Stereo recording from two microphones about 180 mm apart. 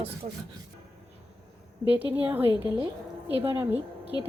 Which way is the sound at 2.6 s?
10° right (ahead or behind).